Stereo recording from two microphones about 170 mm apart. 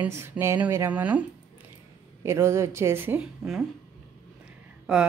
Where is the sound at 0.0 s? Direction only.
10° right (ahead or behind).